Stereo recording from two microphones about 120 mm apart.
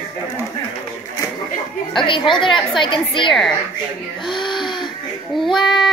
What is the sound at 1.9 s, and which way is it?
A woman's voice, 45° left (ahead or behind).